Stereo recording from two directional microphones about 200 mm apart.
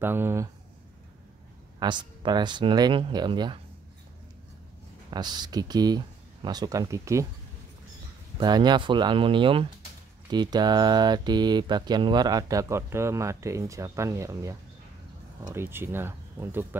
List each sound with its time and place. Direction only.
0.0 s speech: 10° right (ahead or behind)
1.8 s speech: 20° right (ahead or behind)
5.1 s speech: 20° right (ahead or behind)
8.4 s speech: 20° right (ahead or behind)